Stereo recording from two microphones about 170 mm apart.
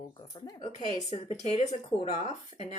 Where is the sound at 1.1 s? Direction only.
40° left (ahead or behind).